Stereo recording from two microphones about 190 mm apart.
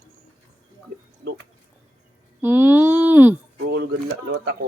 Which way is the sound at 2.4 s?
10° right (ahead or behind).